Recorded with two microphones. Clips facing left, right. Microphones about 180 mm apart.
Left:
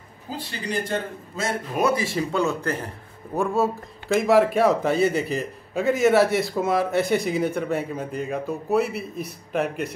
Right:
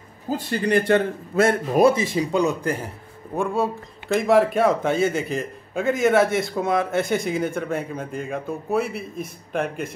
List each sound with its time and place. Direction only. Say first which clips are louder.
0.4 s a man's voice: right 8 dB; 55° right (ahead or behind)
1.8 s speech: right 5 dB; 30° right (ahead or behind)
2.0 s speech: right 2 dB; 15° right (ahead or behind)
3.3 s speech: left 1 dB; centre (ahead or behind)